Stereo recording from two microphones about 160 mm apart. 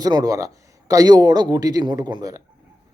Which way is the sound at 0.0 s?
25° right (ahead or behind).